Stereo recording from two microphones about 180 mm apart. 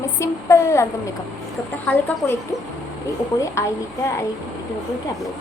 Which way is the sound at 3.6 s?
15° left (ahead or behind).